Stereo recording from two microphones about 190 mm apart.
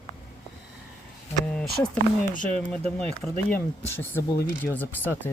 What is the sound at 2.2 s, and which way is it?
Speech, 45° left (ahead or behind).